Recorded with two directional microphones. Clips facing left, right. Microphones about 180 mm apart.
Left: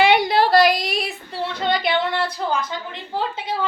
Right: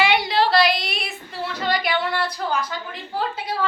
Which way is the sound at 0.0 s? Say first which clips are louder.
Left 3 dB; 55° left (ahead or behind).